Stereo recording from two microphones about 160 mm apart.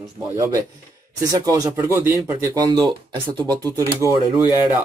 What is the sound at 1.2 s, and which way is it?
Speech, 20° right (ahead or behind).